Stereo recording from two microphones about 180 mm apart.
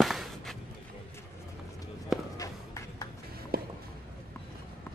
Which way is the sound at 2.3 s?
20° left (ahead or behind).